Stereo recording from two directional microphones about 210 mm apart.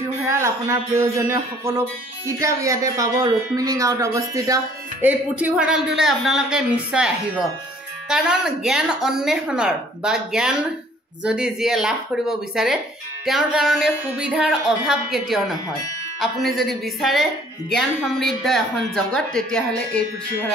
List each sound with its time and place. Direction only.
0.3 s a woman's voice: 15° right (ahead or behind); by 20.0 s 5° left (ahead or behind)